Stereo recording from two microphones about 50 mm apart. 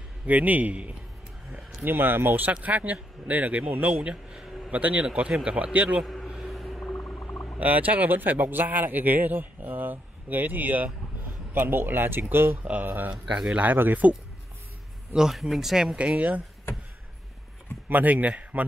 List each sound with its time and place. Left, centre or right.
0.3 s speech: right
1.9 s speech: right
2.6 s speech: right
3.9 s a man's voice: right
6.2 s vehicle: centre
6.5 s whale vocalization: centre
6.9 s music: left
7.2 s a sound: left
7.6 s speech: right
11.5 s speech: right
13.5 s speech: right
15.3 s speech: centre
16.1 s speech: right
17.8 s speech: right